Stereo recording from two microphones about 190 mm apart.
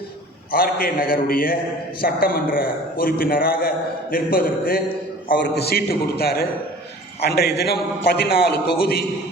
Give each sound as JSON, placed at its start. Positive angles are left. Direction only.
{"t": 0.5, "sound": "a man's voice", "side_deg": 50}